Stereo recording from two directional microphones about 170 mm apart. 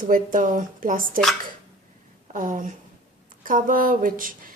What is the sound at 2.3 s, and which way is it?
A woman's voice, 50° right (ahead or behind).